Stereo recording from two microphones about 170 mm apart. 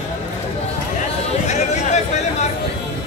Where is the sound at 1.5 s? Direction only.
45° left (ahead or behind).